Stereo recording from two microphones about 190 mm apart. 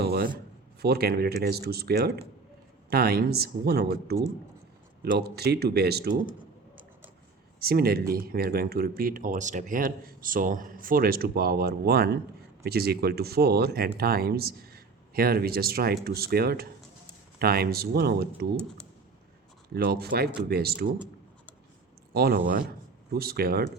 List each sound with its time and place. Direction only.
0.0 s a sound: 55° right (ahead or behind)
0.8 s speech: 55° right (ahead or behind)
7.6 s speech: 50° right (ahead or behind)
19.7 s speech: 55° right (ahead or behind)
22.1 s speech: 55° right (ahead or behind)